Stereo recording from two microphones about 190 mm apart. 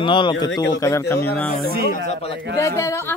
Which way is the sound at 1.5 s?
50° left (ahead or behind).